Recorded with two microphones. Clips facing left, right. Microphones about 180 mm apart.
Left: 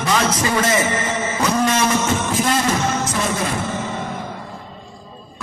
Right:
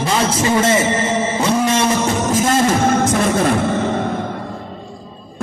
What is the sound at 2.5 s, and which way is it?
Music, 50° right (ahead or behind).